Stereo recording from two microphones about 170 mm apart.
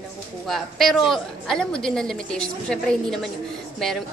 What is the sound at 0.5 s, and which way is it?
A woman's voice, centre (ahead or behind).